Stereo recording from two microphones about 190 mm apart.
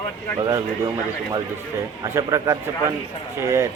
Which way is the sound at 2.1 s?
15° right (ahead or behind).